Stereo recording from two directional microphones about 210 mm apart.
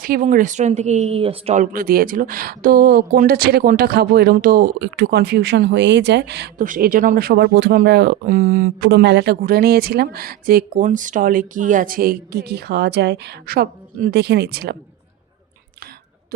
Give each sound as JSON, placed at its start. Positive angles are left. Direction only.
{"t": 0.0, "sound": "speech", "side_deg": -40}
{"t": 1.7, "sound": "speech", "side_deg": -45}
{"t": 6.7, "sound": "speech", "side_deg": -40}